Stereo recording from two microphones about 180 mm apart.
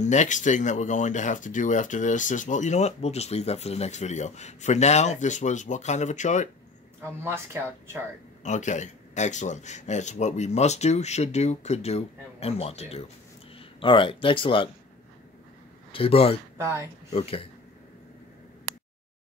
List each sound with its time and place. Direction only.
0.0 s speech: 40° left (ahead or behind)
7.0 s speech: 15° right (ahead or behind)
8.5 s speech: 40° left (ahead or behind)
15.9 s speech: 30° left (ahead or behind)
16.5 s speech: 15° right (ahead or behind)